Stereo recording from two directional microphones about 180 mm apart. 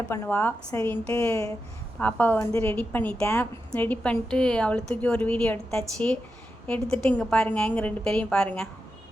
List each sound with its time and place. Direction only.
0.1 s a woman's voice: 10° left (ahead or behind)